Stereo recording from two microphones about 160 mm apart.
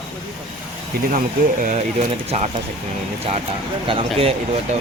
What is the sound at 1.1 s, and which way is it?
Speech, 55° right (ahead or behind).